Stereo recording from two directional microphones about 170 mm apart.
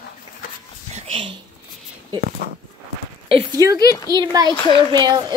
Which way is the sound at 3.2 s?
30° right (ahead or behind).